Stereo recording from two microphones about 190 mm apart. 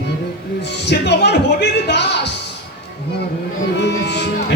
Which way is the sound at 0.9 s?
60° left (ahead or behind).